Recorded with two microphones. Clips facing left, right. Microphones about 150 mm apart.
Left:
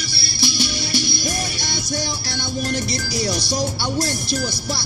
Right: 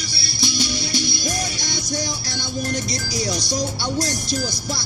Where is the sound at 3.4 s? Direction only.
30° left (ahead or behind).